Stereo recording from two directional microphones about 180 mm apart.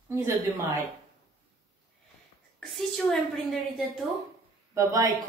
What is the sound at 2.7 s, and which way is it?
A woman's voice, centre (ahead or behind).